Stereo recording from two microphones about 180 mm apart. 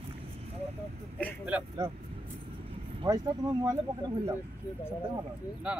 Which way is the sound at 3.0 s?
20° right (ahead or behind).